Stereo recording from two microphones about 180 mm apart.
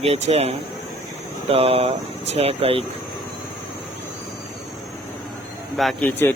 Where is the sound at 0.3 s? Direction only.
35° right (ahead or behind).